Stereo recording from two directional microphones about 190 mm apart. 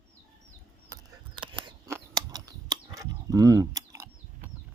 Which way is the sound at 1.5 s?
20° right (ahead or behind).